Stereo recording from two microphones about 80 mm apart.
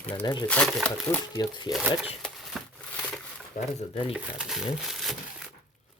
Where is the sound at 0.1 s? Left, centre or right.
Left.